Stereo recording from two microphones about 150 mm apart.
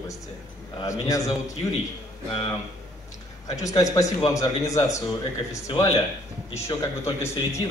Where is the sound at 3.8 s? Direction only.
20° left (ahead or behind).